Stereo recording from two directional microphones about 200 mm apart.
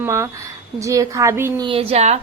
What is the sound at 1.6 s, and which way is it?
Speech, 30° right (ahead or behind).